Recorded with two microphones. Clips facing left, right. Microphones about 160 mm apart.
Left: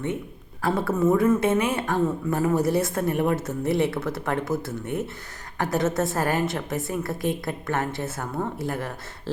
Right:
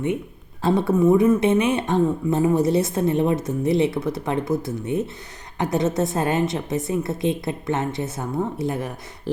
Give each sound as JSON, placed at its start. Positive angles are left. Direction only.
{"t": 0.6, "sound": "speech", "side_deg": -20}